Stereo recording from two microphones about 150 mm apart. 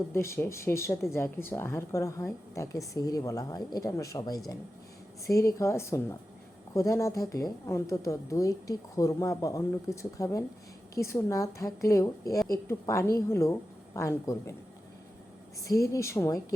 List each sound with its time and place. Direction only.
0.1 s a woman's voice: 15° left (ahead or behind)
15.6 s a woman's voice: 20° left (ahead or behind)